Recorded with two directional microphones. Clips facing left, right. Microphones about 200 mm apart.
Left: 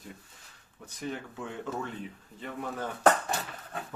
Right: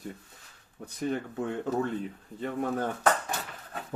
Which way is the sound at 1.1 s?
40° right (ahead or behind).